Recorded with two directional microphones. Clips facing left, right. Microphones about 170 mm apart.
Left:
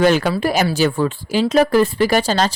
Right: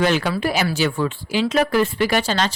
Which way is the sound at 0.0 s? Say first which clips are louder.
Left 4 dB; 45° left (ahead or behind).